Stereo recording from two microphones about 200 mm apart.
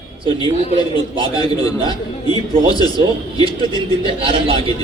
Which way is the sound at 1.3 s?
20° left (ahead or behind).